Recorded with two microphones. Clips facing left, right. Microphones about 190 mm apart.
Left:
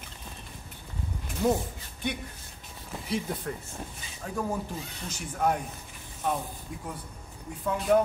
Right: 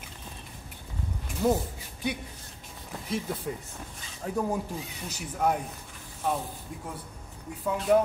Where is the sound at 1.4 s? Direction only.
Centre (ahead or behind).